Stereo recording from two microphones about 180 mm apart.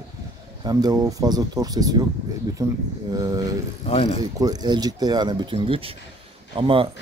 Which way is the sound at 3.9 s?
35° left (ahead or behind).